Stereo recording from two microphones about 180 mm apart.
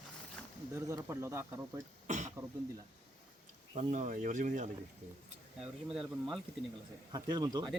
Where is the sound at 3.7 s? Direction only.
40° right (ahead or behind).